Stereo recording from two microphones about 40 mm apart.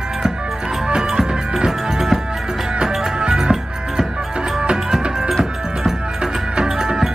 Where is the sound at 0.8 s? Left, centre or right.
Centre.